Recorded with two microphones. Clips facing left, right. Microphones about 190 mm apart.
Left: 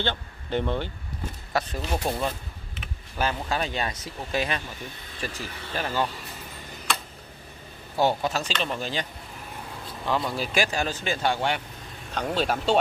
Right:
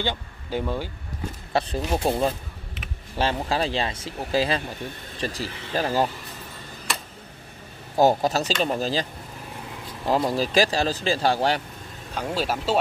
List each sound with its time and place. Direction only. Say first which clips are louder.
0.0 s speech: right 1 dB; 10° right (ahead or behind)
1.5 s speech: right 4 dB; 30° right (ahead or behind)
8.0 s speech: right 5 dB; 40° right (ahead or behind)
10.0 s speech: right 5 dB; 35° right (ahead or behind)
12.1 s speech: even; 10° right (ahead or behind)